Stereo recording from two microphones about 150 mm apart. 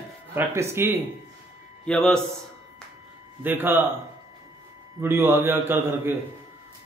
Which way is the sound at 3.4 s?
15° right (ahead or behind).